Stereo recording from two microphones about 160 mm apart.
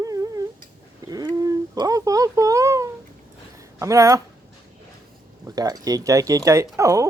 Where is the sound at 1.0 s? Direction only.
25° right (ahead or behind).